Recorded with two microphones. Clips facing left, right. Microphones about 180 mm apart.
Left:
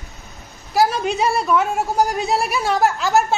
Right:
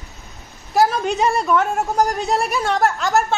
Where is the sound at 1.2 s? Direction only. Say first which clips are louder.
Even; centre (ahead or behind).